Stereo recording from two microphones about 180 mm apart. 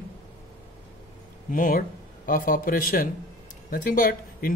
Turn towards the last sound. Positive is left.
turn(degrees=50)  # may be behind; listen again after turning